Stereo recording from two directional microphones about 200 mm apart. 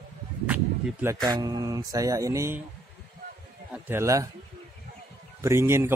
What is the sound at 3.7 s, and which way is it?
Speech, 10° right (ahead or behind).